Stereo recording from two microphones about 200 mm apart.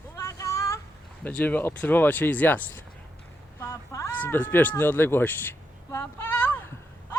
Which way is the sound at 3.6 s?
15° left (ahead or behind).